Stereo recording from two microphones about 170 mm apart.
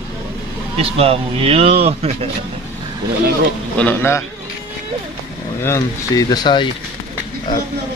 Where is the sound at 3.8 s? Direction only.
10° left (ahead or behind).